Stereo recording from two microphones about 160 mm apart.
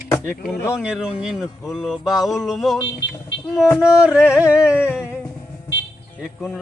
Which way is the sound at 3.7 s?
5° right (ahead or behind).